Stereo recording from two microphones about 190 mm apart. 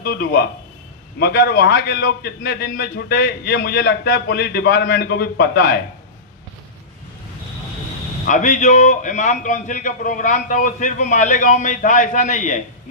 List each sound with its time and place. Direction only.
0.0 s a man's voice: 55° left (ahead or behind)
8.3 s a man's voice: 40° left (ahead or behind)